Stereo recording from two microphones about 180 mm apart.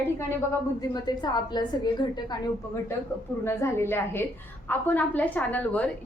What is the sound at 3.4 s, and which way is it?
A woman's voice, 15° left (ahead or behind).